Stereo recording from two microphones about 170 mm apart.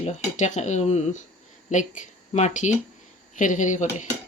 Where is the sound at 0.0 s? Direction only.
40° left (ahead or behind).